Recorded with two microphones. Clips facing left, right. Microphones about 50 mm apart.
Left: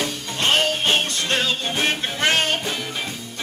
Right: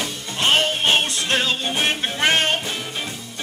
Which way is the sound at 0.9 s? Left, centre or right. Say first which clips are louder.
Right 1 dB; centre.